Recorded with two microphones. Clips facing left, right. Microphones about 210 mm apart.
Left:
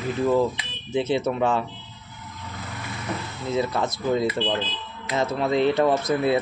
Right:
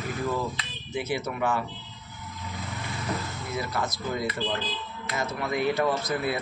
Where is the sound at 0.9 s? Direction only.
25° left (ahead or behind).